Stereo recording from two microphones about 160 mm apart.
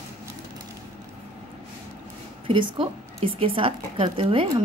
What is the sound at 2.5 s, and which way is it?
A woman's voice, 30° right (ahead or behind).